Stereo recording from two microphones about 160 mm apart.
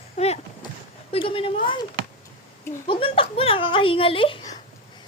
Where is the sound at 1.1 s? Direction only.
35° left (ahead or behind).